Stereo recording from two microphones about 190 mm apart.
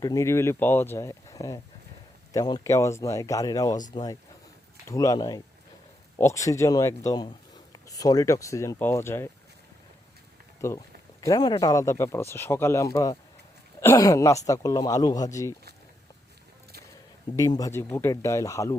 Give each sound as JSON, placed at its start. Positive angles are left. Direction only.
{"t": 0.0, "sound": "speech", "side_deg": 15}
{"t": 10.6, "sound": "speech", "side_deg": 15}
{"t": 17.3, "sound": "speech", "side_deg": 20}